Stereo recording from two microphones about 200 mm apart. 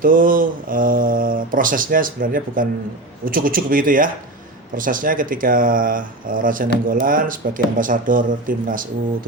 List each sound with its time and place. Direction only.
0.0 s speech: 45° right (ahead or behind)